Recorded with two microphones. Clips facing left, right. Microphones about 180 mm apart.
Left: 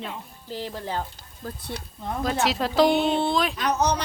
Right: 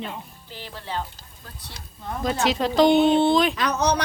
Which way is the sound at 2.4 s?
Centre (ahead or behind).